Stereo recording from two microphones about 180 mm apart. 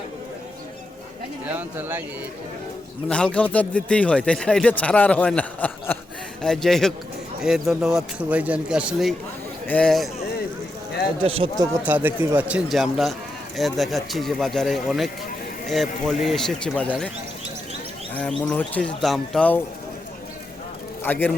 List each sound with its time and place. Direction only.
1.5 s a man's voice: 10° right (ahead or behind)
3.1 s a man's voice: 5° left (ahead or behind)
11.2 s speech: 30° right (ahead or behind)
11.9 s a man's voice: 10° right (ahead or behind); by 17.1 s 5° left (ahead or behind)
18.1 s a man's voice: 5° left (ahead or behind)
21.0 s a man's voice: 10° left (ahead or behind)